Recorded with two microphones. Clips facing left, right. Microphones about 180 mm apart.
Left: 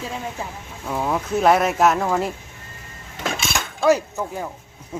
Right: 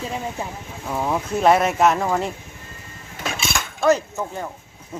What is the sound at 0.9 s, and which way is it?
Speech, centre (ahead or behind).